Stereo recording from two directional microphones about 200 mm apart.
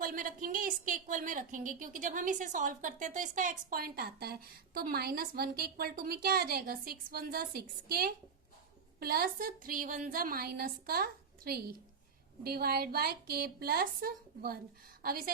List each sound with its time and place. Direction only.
0.0 s a woman's voice: 45° right (ahead or behind)